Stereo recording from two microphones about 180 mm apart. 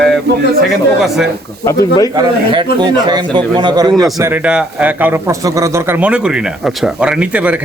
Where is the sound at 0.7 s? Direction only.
Centre (ahead or behind).